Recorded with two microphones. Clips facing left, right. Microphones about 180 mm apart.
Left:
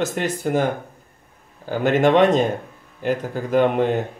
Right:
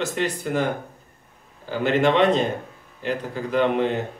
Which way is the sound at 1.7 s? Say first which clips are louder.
Left 3 dB; 50° left (ahead or behind).